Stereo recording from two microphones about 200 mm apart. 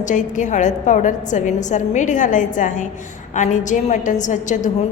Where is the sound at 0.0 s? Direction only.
40° left (ahead or behind).